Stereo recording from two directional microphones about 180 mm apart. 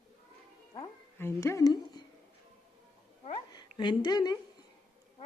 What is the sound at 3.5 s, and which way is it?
Speech, 25° left (ahead or behind).